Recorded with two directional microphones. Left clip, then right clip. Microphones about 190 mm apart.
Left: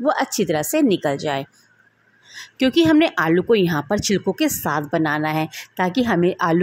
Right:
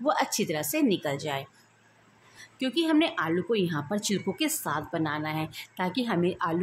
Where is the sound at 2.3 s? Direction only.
35° left (ahead or behind).